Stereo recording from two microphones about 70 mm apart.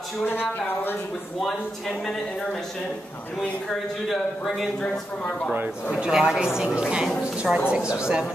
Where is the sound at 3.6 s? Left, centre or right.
Centre.